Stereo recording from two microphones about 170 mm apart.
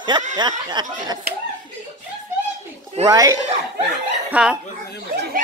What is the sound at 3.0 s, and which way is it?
Speech, 20° right (ahead or behind).